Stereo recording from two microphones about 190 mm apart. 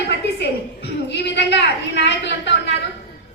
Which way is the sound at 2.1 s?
65° left (ahead or behind).